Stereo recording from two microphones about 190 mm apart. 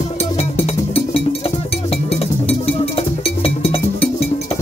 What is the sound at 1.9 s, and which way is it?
Music, 30° left (ahead or behind).